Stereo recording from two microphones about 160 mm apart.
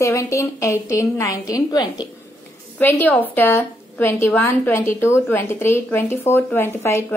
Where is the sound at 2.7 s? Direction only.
10° left (ahead or behind).